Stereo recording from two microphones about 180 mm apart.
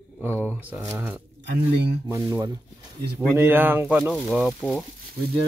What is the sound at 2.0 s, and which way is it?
Speech, 15° right (ahead or behind).